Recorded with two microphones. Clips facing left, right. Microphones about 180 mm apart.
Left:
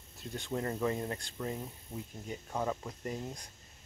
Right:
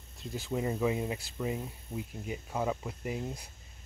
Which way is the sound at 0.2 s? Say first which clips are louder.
Right 3 dB; 5° right (ahead or behind).